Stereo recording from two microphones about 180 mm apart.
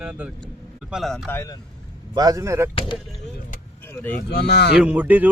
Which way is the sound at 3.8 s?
15° left (ahead or behind).